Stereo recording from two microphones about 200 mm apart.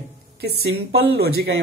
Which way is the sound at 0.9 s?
55° right (ahead or behind).